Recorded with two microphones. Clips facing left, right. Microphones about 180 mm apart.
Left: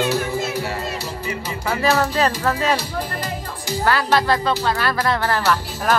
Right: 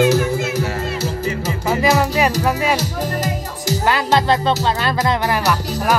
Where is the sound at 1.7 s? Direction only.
15° right (ahead or behind).